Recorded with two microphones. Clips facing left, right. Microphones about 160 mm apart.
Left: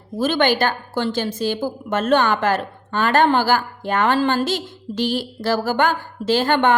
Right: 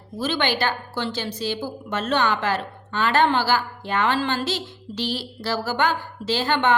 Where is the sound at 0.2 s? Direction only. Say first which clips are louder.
Left 6 dB; 50° left (ahead or behind).